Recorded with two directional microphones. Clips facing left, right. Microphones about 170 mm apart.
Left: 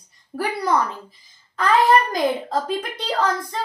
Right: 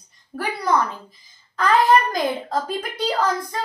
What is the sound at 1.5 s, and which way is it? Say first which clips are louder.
Speech: even; centre (ahead or behind).